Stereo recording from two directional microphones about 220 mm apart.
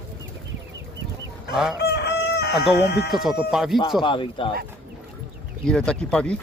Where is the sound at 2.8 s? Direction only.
50° left (ahead or behind).